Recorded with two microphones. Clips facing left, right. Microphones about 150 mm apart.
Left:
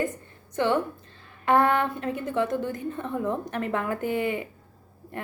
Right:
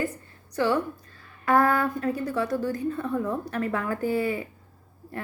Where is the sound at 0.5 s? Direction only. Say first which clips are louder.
Even; 25° left (ahead or behind).